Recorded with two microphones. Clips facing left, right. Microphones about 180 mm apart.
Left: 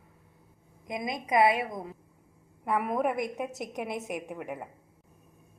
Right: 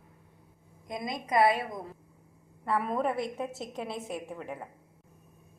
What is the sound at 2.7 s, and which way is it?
A woman's voice, 15° left (ahead or behind).